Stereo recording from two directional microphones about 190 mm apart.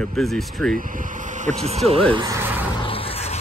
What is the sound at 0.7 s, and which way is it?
Speech, 45° right (ahead or behind).